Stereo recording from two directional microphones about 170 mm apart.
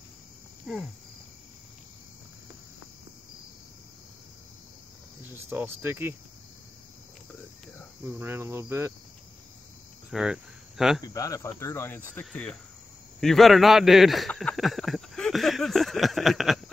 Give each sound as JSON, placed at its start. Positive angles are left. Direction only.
{"t": 0.7, "sound": "a man's voice", "side_deg": 0}
{"t": 5.3, "sound": "speech", "side_deg": -10}
{"t": 8.0, "sound": "cricket", "side_deg": -15}
{"t": 10.1, "sound": "cricket", "side_deg": -5}
{"t": 11.1, "sound": "a man's voice", "side_deg": 20}